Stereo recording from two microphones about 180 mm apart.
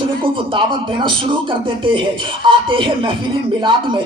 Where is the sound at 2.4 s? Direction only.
30° right (ahead or behind).